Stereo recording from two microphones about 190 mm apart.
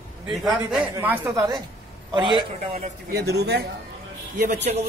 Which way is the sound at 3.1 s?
60° right (ahead or behind).